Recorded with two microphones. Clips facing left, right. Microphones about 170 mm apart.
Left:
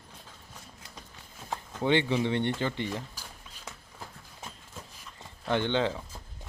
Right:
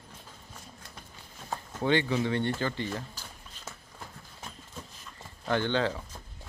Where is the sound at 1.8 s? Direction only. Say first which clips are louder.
Left 1 dB; 20° left (ahead or behind).